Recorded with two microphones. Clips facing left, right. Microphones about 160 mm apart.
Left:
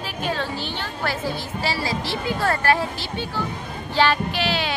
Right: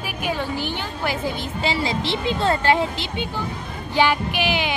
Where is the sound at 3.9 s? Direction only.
15° right (ahead or behind).